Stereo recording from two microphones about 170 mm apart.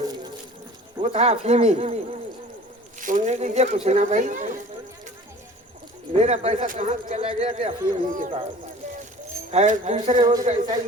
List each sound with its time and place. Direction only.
1.0 s speech: 40° right (ahead or behind)
3.0 s speech: 50° right (ahead or behind)
6.1 s speech: 40° right (ahead or behind)
8.1 s speech: 50° right (ahead or behind)